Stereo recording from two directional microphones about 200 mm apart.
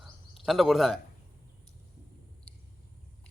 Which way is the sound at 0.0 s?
Centre (ahead or behind).